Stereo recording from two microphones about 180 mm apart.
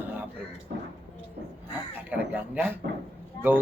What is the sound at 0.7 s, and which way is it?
Speech, 55° right (ahead or behind).